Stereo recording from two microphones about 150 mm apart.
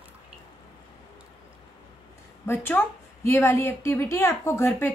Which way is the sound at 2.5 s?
15° left (ahead or behind).